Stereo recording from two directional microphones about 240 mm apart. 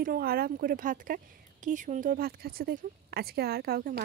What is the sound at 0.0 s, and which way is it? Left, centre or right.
Speech, right.